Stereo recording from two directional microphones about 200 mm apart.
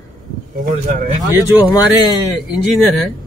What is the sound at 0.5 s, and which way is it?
Speech, 45° right (ahead or behind).